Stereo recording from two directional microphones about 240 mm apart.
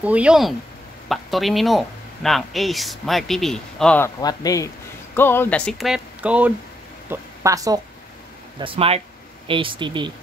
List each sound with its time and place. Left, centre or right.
0.0 s speech: centre
4.2 s a woman's voice: centre